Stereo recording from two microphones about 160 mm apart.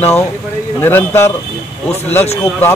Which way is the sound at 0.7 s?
15° left (ahead or behind).